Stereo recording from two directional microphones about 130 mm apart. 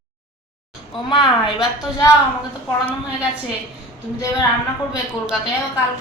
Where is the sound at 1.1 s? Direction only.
35° left (ahead or behind).